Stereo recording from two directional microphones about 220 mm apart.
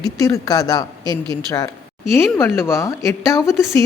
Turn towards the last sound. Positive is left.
turn(degrees=15)  # may be behind; listen again after turning